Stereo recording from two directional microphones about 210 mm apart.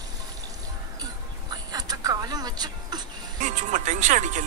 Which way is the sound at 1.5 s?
20° right (ahead or behind).